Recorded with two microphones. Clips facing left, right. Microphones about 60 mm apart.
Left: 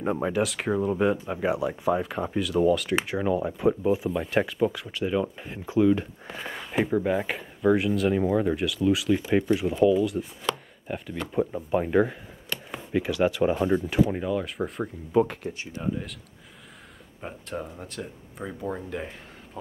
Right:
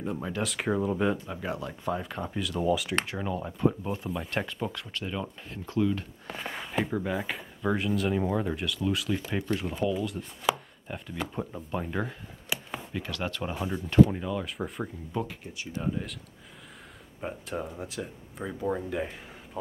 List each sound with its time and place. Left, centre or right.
0.0 s speech: left
0.4 s speech: centre
0.9 s speech: centre
6.3 s speech: centre
6.8 s speech: centre
7.3 s speech: centre
11.3 s speech: centre
12.5 s a sound: centre
12.9 s speech: centre
15.2 s speech: centre
15.8 s speech: centre
17.2 s speech: centre